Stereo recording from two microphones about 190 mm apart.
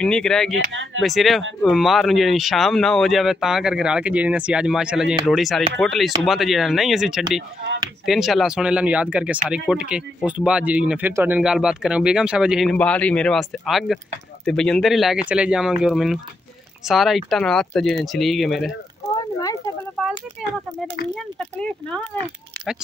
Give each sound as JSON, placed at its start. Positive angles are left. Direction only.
{"t": 0.0, "sound": "speech", "side_deg": 5}
{"t": 0.7, "sound": "speech", "side_deg": -75}
{"t": 1.0, "sound": "speech", "side_deg": 0}
{"t": 20.4, "sound": "speech", "side_deg": 0}